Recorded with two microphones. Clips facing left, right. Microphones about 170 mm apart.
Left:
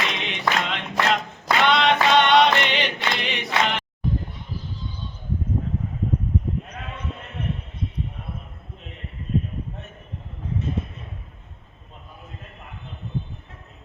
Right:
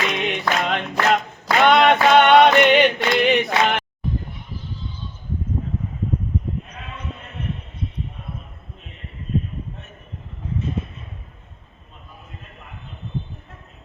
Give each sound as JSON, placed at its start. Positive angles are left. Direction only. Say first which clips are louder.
{"t": 0.1, "sound": "singing", "louder": "right 3 dB", "side_deg": -50}